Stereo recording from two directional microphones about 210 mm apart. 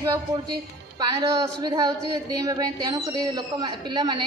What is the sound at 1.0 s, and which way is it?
A woman's voice, 20° right (ahead or behind).